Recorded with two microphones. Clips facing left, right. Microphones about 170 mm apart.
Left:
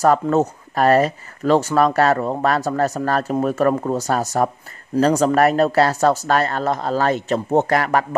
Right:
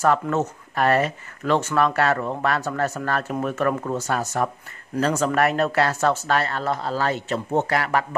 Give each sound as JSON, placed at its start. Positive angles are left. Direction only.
{"t": 0.0, "sound": "speech", "side_deg": 35}